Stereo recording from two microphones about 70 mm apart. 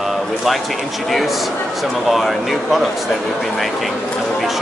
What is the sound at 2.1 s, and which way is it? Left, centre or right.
Speech, centre.